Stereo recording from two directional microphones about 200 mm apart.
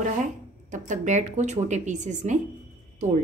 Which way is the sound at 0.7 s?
35° right (ahead or behind).